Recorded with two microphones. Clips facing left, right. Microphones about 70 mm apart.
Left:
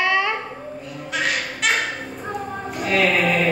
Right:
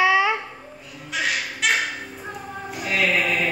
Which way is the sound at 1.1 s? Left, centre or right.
Centre.